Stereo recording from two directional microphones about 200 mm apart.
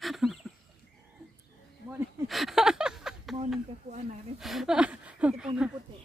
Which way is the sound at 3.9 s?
40° right (ahead or behind).